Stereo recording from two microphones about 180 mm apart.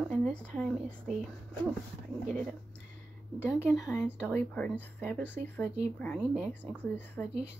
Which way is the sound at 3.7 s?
Centre (ahead or behind).